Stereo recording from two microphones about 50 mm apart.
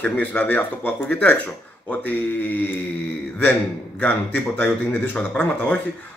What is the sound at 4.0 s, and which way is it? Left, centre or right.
Speech, left.